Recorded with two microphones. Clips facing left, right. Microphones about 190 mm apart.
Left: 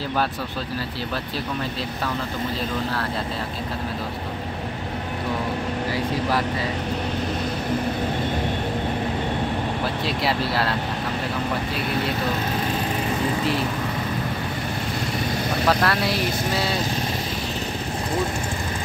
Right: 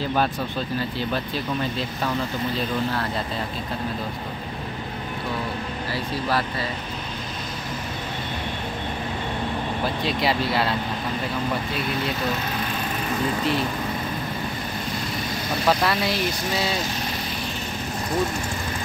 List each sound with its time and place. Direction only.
10.0 s speech: centre (ahead or behind)
15.8 s speech: centre (ahead or behind)